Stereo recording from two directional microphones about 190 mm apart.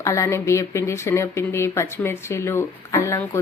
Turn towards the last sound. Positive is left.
turn(degrees=15)  # may be behind; listen again after turning